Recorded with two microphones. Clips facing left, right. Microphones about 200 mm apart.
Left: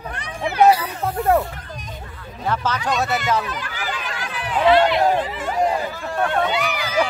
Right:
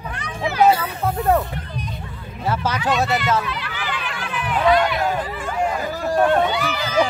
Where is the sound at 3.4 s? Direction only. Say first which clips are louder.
Even; 45° left (ahead or behind); by 4.9 s 30° left (ahead or behind).